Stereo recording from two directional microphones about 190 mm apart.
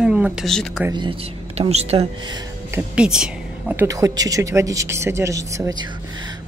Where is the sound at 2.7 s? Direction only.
5° right (ahead or behind).